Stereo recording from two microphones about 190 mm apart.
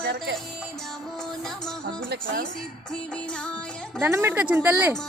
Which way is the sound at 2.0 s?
50° right (ahead or behind).